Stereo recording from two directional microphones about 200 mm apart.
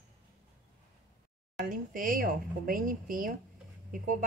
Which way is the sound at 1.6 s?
45° right (ahead or behind).